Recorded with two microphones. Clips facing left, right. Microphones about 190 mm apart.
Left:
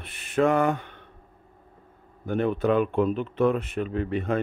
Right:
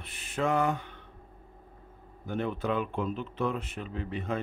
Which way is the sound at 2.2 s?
60° left (ahead or behind).